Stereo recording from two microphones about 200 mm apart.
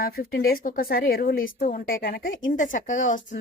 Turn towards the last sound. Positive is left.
turn(degrees=40)  # may be behind; listen again after turning